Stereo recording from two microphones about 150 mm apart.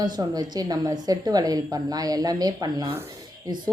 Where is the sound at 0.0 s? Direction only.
25° right (ahead or behind).